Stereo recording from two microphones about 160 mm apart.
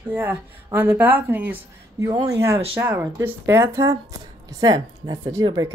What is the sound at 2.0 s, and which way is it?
A woman's voice, 20° right (ahead or behind).